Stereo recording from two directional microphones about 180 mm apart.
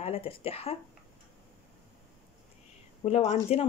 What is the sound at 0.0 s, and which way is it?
Speech, 35° left (ahead or behind).